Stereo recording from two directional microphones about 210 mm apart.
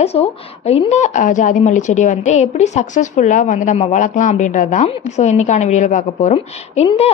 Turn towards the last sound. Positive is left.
turn(degrees=30)  # may be behind; listen again after turning